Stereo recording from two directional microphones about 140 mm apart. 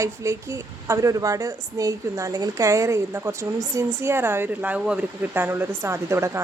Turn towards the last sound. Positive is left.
turn(degrees=-20)  # may be behind; listen again after turning